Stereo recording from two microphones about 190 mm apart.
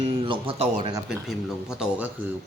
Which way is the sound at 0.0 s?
30° right (ahead or behind).